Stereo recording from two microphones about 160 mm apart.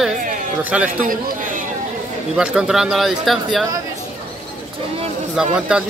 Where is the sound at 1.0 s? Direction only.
60° right (ahead or behind).